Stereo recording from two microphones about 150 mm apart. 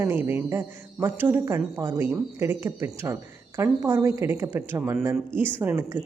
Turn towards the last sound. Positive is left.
turn(degrees=-15)  # may be behind; listen again after turning